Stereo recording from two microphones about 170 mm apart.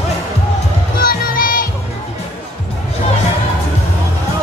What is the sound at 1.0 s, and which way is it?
Music, 60° left (ahead or behind).